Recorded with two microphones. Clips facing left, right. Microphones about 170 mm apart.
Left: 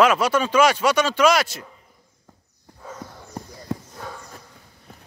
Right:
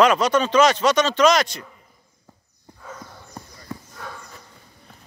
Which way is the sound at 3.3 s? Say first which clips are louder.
Left 7 dB; 30° left (ahead or behind).